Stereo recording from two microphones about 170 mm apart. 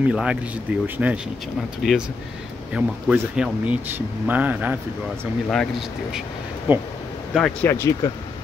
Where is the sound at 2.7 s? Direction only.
5° right (ahead or behind).